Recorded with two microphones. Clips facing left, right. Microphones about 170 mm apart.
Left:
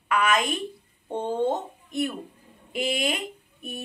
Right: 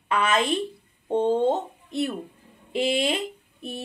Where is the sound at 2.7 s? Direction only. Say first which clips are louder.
Right 3 dB; 30° right (ahead or behind).